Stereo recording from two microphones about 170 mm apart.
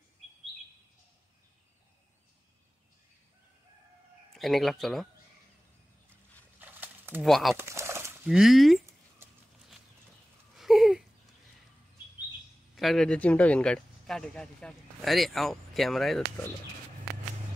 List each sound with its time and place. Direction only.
4.3 s speech: centre (ahead or behind)
6.6 s horse: 10° right (ahead or behind)
7.2 s speech: centre (ahead or behind)
7.5 s bird: 15° right (ahead or behind)
8.3 s speech: centre (ahead or behind)
10.5 s a sound: centre (ahead or behind)
12.7 s speech: centre (ahead or behind)